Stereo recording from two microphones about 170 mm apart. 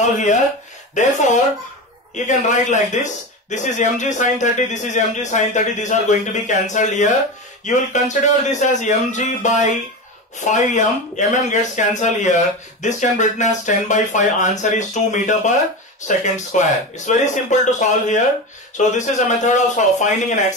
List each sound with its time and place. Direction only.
0.0 s speech: 45° left (ahead or behind)